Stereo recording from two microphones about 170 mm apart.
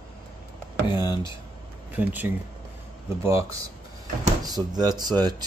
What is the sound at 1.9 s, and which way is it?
Speech, 10° right (ahead or behind).